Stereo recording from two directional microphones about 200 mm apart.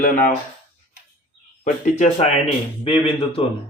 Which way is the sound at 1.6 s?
35° left (ahead or behind).